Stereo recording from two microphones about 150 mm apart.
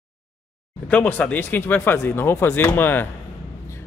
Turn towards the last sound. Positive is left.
turn(degrees=10)  # may be behind; listen again after turning